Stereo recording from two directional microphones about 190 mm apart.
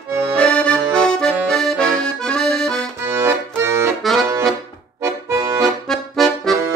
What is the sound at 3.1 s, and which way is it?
Accordion, 10° right (ahead or behind).